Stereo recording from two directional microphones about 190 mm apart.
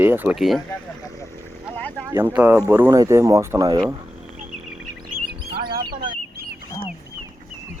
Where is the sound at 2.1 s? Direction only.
10° right (ahead or behind).